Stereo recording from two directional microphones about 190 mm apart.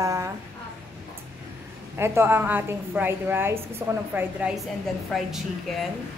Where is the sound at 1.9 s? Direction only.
15° right (ahead or behind).